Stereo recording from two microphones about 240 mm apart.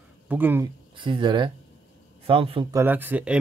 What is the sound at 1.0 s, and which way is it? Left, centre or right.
Speech, centre.